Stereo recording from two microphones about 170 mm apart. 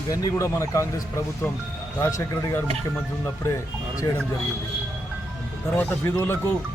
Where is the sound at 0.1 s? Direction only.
20° left (ahead or behind).